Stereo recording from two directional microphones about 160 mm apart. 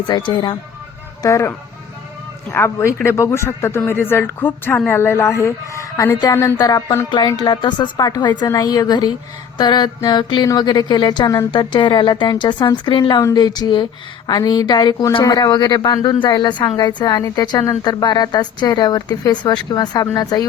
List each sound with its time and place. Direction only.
0.1 s speech: 30° left (ahead or behind)
1.2 s speech: 20° left (ahead or behind)